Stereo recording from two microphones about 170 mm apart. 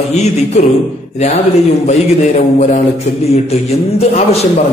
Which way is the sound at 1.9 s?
45° left (ahead or behind).